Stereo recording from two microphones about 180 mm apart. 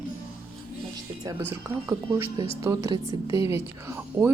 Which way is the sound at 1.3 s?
15° right (ahead or behind).